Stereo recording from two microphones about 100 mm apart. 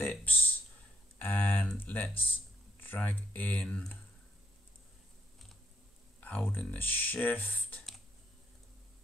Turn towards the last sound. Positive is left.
turn(degrees=15)  # may be behind; listen again after turning